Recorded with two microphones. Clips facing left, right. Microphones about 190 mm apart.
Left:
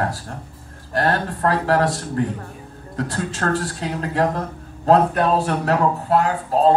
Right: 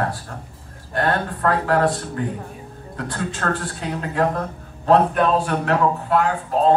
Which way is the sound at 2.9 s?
40° left (ahead or behind).